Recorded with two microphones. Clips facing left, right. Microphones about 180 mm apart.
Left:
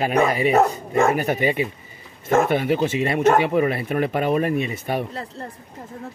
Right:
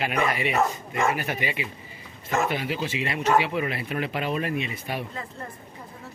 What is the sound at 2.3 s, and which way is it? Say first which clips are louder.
Speech: left 8 dB; 50° left (ahead or behind).